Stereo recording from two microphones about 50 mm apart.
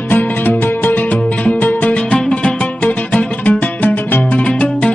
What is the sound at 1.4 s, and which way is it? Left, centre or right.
Music, left.